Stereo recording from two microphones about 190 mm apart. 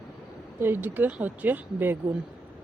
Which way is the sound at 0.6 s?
10° right (ahead or behind).